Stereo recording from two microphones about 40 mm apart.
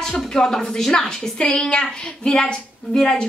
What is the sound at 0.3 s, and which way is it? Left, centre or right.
A woman's voice, centre.